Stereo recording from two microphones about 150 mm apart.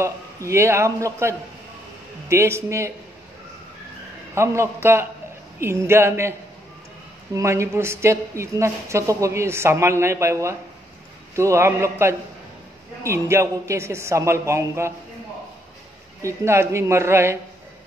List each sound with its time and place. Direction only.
0.0 s a woman's voice: 20° right (ahead or behind)
4.4 s a woman's voice: 15° right (ahead or behind)
7.3 s a woman's voice: 20° right (ahead or behind)
16.2 s a woman's voice: 20° right (ahead or behind)